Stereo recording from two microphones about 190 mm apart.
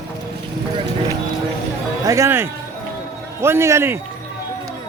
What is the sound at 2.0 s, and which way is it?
Speech, 15° right (ahead or behind).